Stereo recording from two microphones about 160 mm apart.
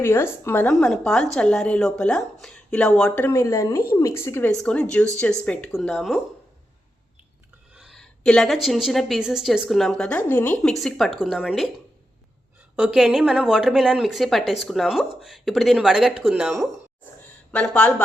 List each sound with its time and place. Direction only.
0.0 s a woman's voice: 15° left (ahead or behind)
7.7 s a woman's voice: 5° right (ahead or behind)
12.7 s a woman's voice: 5° right (ahead or behind)
17.5 s speech: 5° left (ahead or behind)